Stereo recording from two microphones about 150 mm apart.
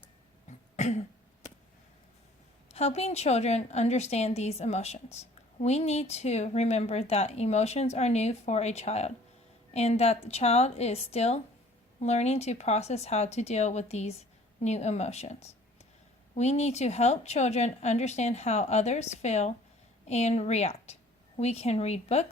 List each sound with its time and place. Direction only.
0.8 s throat clearing: 50° left (ahead or behind)
2.6 s a woman's voice: 45° left (ahead or behind)